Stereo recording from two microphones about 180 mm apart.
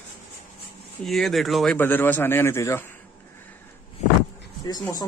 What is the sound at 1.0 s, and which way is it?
Speech, centre (ahead or behind).